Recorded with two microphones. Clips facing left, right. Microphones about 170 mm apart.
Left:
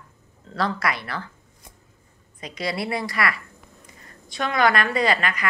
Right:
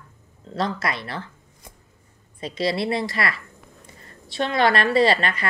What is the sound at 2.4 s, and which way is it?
Cutlery, 25° right (ahead or behind).